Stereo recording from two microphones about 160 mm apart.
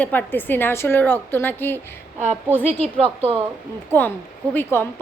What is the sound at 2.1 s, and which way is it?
Speech, 45° right (ahead or behind).